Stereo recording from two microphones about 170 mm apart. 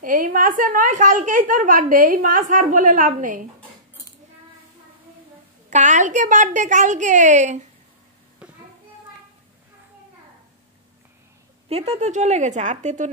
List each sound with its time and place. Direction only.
0.0 s speech: 50° right (ahead or behind)
5.7 s speech: 45° right (ahead or behind)
8.4 s a sound: 5° right (ahead or behind)
11.7 s speech: 40° right (ahead or behind)